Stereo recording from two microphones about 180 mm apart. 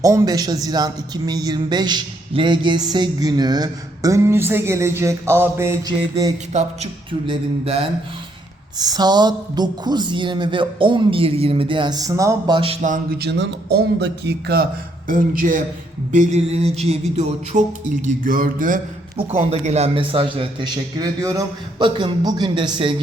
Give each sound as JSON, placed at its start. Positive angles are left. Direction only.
{"t": 0.0, "sound": "speech", "side_deg": -20}
{"t": 6.5, "sound": "a sound", "side_deg": -35}
{"t": 8.8, "sound": "speech", "side_deg": -20}
{"t": 13.1, "sound": "a man's voice", "side_deg": -70}
{"t": 16.1, "sound": "a sound", "side_deg": -40}
{"t": 19.5, "sound": "speech", "side_deg": -35}